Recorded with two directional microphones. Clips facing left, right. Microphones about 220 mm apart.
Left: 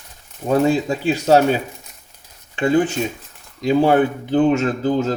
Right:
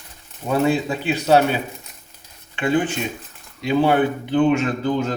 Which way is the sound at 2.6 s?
40° left (ahead or behind).